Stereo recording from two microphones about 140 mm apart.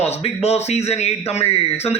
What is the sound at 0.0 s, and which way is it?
Speech, 50° left (ahead or behind).